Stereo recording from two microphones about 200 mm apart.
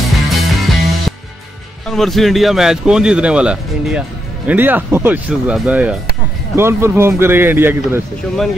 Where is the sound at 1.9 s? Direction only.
Centre (ahead or behind).